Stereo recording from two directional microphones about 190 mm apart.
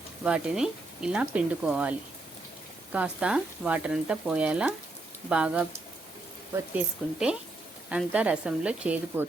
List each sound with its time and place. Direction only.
0.2 s speech: 5° right (ahead or behind)
6.7 s speech: 5° right (ahead or behind)